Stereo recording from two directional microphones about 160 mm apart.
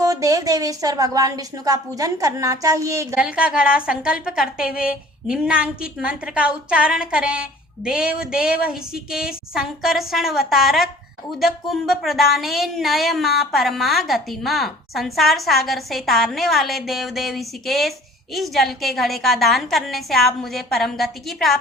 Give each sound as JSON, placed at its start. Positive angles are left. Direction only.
{"t": 0.0, "sound": "a woman's voice", "side_deg": -20}
{"t": 3.2, "sound": "speech", "side_deg": -5}